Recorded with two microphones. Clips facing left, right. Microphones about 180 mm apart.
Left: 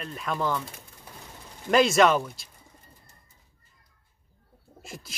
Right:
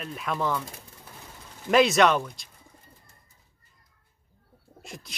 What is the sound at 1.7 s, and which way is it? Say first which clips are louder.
Speech: even; centre (ahead or behind).